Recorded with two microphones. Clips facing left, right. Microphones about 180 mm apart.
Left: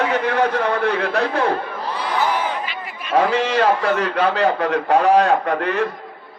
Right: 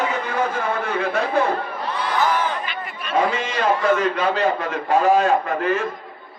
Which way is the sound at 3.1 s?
75° left (ahead or behind).